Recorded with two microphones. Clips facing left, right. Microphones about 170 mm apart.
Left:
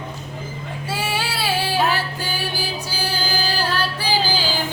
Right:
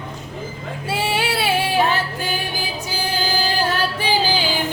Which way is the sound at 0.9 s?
25° right (ahead or behind).